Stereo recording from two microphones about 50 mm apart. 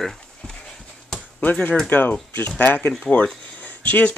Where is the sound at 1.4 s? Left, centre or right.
Left.